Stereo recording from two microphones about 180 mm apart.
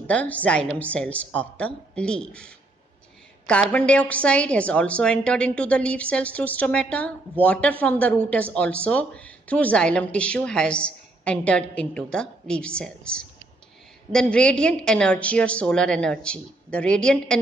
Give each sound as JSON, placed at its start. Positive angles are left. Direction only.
{"t": 0.0, "sound": "a woman's voice", "side_deg": 10}
{"t": 3.7, "sound": "a woman's voice", "side_deg": 10}